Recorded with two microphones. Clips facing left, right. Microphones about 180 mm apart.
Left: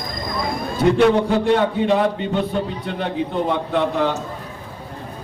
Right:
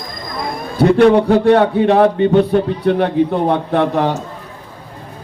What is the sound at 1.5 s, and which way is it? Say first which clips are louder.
A man's voice: right 6 dB; 60° right (ahead or behind).